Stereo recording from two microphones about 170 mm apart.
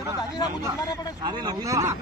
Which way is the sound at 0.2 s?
25° left (ahead or behind).